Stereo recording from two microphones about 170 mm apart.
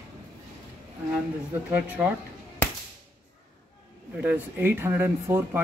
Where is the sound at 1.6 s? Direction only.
10° right (ahead or behind).